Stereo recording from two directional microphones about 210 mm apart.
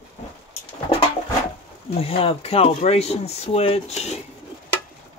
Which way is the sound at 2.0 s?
30° left (ahead or behind).